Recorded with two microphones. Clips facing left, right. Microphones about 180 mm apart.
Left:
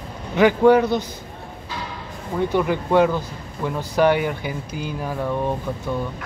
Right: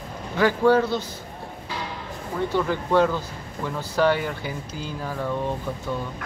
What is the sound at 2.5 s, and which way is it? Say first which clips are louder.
Speech: left 3 dB; 15° left (ahead or behind).